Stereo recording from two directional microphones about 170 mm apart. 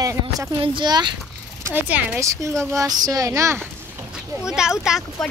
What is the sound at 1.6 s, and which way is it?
Speech, 10° right (ahead or behind).